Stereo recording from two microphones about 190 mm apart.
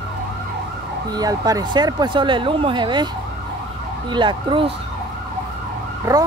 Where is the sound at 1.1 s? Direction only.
20° right (ahead or behind).